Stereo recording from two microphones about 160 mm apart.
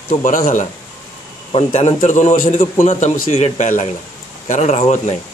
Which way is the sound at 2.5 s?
40° left (ahead or behind).